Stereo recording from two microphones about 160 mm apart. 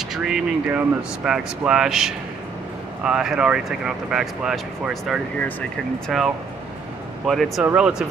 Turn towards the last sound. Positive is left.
turn(degrees=-5)  # may be behind; listen again after turning